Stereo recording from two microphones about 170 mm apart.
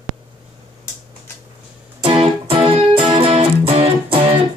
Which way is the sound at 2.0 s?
35° right (ahead or behind).